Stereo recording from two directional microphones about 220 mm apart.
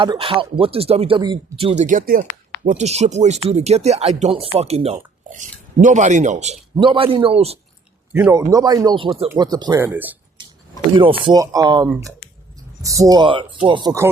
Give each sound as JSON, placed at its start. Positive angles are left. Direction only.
{"t": 0.0, "sound": "speech", "side_deg": -20}
{"t": 8.1, "sound": "speech", "side_deg": -10}
{"t": 10.9, "sound": "speech", "side_deg": -25}